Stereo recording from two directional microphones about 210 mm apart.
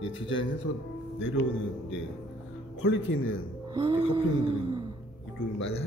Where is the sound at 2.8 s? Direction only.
70° left (ahead or behind).